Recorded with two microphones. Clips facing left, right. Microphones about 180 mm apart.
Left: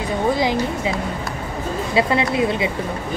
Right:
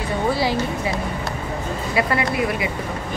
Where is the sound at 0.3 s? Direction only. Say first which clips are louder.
Left 2 dB; 20° left (ahead or behind).